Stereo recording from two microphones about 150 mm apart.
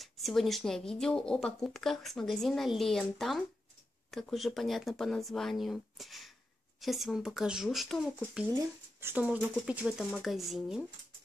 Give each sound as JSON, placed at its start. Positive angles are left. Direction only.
{"t": 0.0, "sound": "speech", "side_deg": 0}
{"t": 8.5, "sound": "speech", "side_deg": -15}